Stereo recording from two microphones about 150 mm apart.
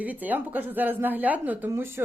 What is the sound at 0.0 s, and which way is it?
A woman's voice, 10° right (ahead or behind).